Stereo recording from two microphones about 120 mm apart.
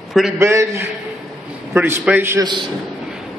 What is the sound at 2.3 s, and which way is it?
Speech, 40° right (ahead or behind).